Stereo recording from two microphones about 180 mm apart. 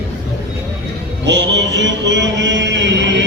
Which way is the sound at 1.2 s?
80° right.